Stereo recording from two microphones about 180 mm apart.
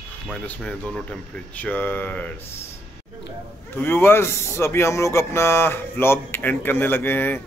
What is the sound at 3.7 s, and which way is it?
A man's voice, 10° left (ahead or behind).